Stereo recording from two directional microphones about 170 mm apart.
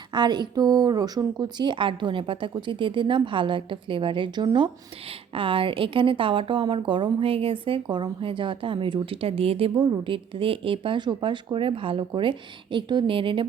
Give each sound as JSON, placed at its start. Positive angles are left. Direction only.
{"t": 0.1, "sound": "a woman's voice", "side_deg": -25}